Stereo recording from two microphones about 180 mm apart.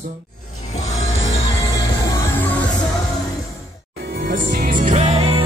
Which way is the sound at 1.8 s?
20° left (ahead or behind).